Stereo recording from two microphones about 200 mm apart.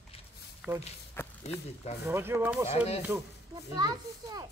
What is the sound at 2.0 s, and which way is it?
Speech, 10° right (ahead or behind).